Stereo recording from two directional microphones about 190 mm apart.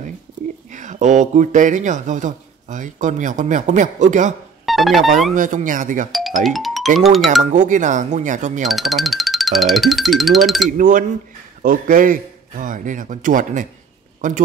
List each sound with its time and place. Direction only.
0.7 s speech: 40° right (ahead or behind)
4.6 s speech: centre (ahead or behind)
5.3 s a man's voice: 45° right (ahead or behind)
6.1 s music: centre (ahead or behind)
7.0 s speech: centre (ahead or behind)
7.5 s speech: 40° right (ahead or behind)
8.6 s speech: centre (ahead or behind)
10.8 s a man's voice: 45° right (ahead or behind)